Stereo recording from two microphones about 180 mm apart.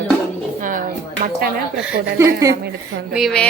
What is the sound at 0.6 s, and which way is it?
Speech, 50° right (ahead or behind).